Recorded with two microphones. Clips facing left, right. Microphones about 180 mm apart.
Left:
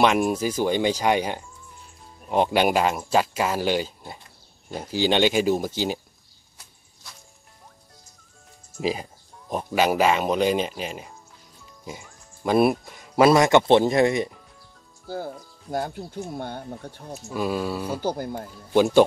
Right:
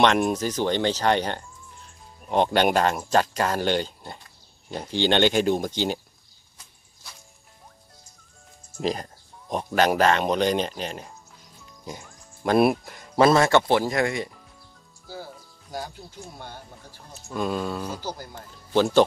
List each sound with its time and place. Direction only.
0.0 s speech: 5° left (ahead or behind)
8.7 s speech: 5° left (ahead or behind)
11.8 s music: centre (ahead or behind)
13.2 s speech: 15° left (ahead or behind)
15.0 s speech: 55° left (ahead or behind)
17.3 s speech: 5° left (ahead or behind)
18.0 s speech: 55° left (ahead or behind)